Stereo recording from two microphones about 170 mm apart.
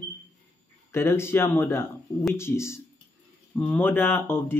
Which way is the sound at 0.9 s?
15° left (ahead or behind).